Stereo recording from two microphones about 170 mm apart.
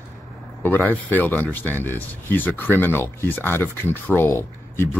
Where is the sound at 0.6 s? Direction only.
10° left (ahead or behind).